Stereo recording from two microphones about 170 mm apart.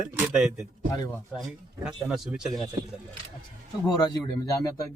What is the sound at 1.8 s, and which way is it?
Speech, centre (ahead or behind).